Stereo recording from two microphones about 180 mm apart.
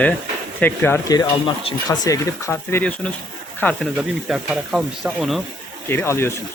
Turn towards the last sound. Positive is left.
turn(degrees=15)  # may be behind; listen again after turning